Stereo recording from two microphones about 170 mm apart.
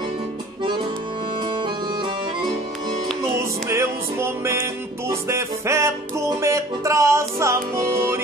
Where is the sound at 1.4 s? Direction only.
30° right (ahead or behind).